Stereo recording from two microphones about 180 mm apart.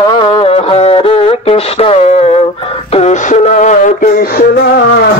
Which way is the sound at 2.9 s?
40° left (ahead or behind).